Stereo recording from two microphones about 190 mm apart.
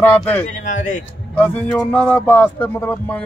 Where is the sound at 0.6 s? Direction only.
40° left (ahead or behind).